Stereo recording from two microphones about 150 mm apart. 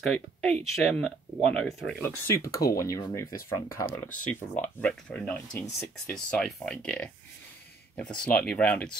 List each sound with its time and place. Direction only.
0.1 s speech: 5° left (ahead or behind)
2.0 s speech: 20° left (ahead or behind)
2.5 s speech: 90° left
2.8 s speech: 20° left (ahead or behind)
4.2 s speech: 10° left (ahead or behind)